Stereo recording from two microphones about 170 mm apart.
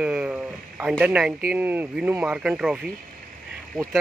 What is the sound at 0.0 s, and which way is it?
Speech, 5° right (ahead or behind).